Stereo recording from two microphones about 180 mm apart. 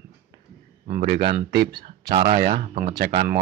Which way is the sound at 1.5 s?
60° right (ahead or behind).